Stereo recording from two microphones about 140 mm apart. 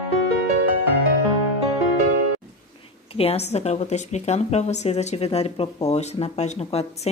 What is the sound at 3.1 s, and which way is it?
Speech, 45° left (ahead or behind).